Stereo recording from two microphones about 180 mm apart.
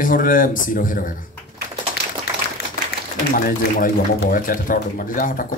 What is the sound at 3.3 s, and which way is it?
Speech, 50° left (ahead or behind).